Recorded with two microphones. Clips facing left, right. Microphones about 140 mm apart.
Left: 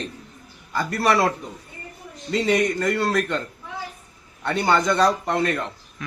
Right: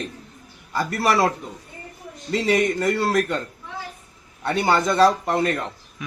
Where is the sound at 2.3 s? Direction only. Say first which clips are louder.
Even; 5° right (ahead or behind).